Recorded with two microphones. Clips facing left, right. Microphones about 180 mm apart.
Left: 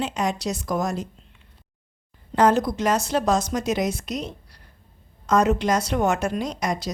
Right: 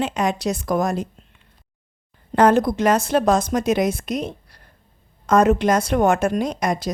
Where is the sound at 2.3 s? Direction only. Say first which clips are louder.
Right 3 dB; 55° right (ahead or behind).